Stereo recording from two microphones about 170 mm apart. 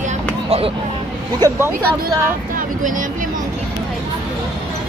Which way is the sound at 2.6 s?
50° right (ahead or behind).